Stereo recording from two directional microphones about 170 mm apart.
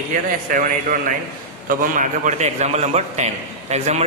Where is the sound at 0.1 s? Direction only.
50° right (ahead or behind).